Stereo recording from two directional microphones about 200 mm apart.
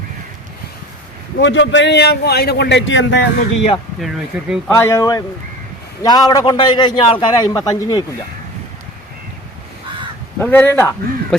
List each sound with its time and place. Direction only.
1.4 s a man's voice: 65° left (ahead or behind)
4.0 s speech: centre (ahead or behind)
4.7 s a man's voice: 15° left (ahead or behind)
10.4 s speech: 10° left (ahead or behind)